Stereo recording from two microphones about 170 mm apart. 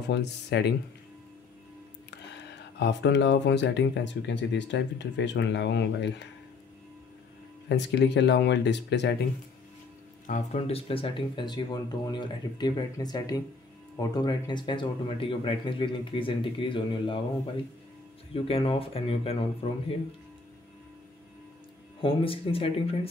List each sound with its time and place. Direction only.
0.1 s speech: 90° left
2.8 s speech: 90° left
7.6 s speech: 90° left
10.2 s speech: 50° left (ahead or behind)
10.7 s speech: 30° left (ahead or behind)
18.3 s speech: 35° left (ahead or behind)
22.0 s speech: 30° left (ahead or behind)